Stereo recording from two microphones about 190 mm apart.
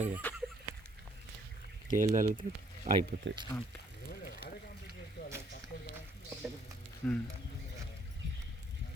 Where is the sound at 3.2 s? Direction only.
70° right (ahead or behind).